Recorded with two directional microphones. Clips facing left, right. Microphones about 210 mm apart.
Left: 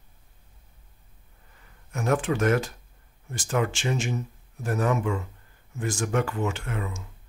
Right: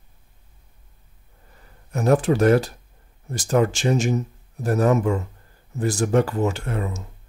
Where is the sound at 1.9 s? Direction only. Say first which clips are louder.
Right 6 dB; 35° right (ahead or behind).